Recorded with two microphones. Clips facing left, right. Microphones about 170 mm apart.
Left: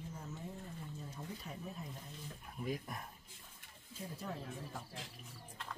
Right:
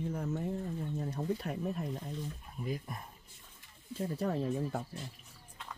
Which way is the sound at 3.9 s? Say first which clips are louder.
Right 11 dB; 70° right (ahead or behind).